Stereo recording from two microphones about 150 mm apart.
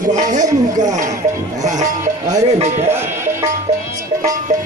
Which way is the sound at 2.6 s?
50° right (ahead or behind).